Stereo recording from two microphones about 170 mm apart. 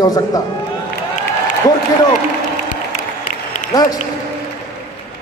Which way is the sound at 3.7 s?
20° left (ahead or behind).